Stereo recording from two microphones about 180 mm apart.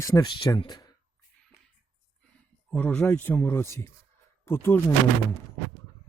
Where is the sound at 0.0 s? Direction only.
20° left (ahead or behind).